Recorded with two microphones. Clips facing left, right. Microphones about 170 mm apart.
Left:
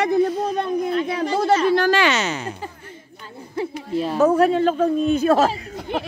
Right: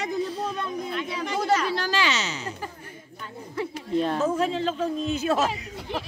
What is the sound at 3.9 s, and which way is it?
Speech, 5° left (ahead or behind).